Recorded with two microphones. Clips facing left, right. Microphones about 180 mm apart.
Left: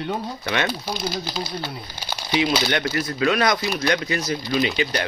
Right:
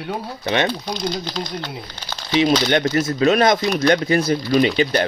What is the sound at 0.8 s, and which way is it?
Speech, 5° left (ahead or behind).